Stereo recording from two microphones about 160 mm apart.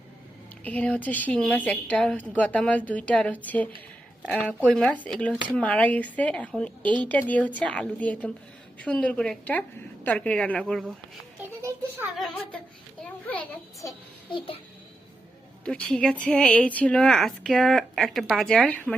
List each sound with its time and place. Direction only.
0.6 s a woman's voice: 10° left (ahead or behind)
11.4 s a sound: 15° right (ahead or behind)
12.1 s speech: centre (ahead or behind)
14.3 s a child's voice: 35° left (ahead or behind)
15.6 s speech: 5° left (ahead or behind)